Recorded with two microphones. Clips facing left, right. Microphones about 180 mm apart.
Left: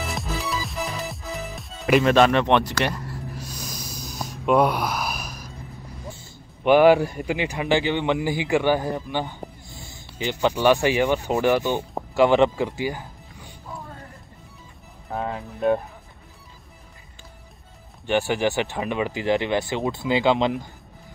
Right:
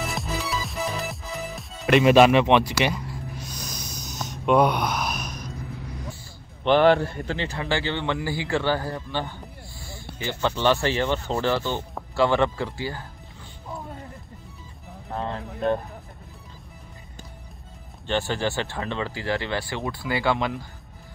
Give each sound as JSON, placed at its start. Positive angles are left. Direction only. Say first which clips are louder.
{"t": 0.0, "sound": "music", "louder": "even", "side_deg": 0}
{"t": 6.6, "sound": "speech", "louder": "left 3 dB", "side_deg": 10}
{"t": 15.1, "sound": "speech", "louder": "left 2 dB", "side_deg": 10}
{"t": 18.0, "sound": "speech", "louder": "left 4 dB", "side_deg": 15}